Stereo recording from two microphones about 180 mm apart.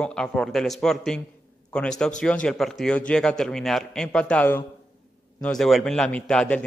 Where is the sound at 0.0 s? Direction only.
5° left (ahead or behind).